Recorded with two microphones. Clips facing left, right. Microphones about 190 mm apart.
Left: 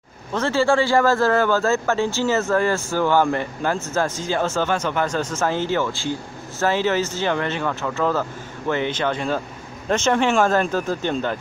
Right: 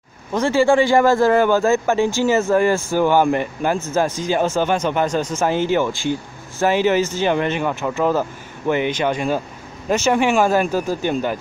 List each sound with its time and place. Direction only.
0.3 s a man's voice: 15° right (ahead or behind)